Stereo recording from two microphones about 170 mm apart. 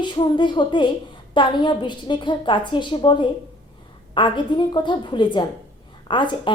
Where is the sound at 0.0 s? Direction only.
25° left (ahead or behind).